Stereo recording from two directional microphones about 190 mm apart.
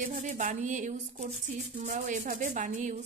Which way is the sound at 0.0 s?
40° right (ahead or behind).